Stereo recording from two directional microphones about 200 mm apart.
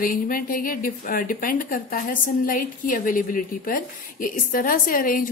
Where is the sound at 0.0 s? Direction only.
45° left (ahead or behind).